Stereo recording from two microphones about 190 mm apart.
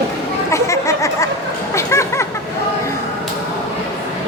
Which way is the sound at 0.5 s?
15° left (ahead or behind).